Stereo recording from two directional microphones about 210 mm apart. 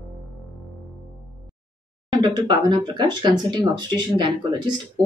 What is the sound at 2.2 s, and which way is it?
Speech, 20° right (ahead or behind).